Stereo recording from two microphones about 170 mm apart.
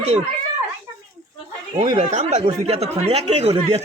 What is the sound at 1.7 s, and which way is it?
Speech, 45° right (ahead or behind).